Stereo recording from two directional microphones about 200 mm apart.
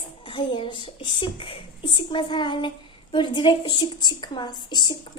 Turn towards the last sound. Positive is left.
turn(degrees=20)  # may be behind; listen again after turning